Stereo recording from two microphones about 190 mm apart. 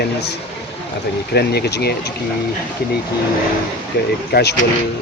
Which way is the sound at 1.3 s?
60° left (ahead or behind).